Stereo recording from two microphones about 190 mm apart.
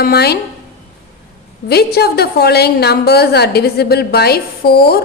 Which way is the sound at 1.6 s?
55° left (ahead or behind).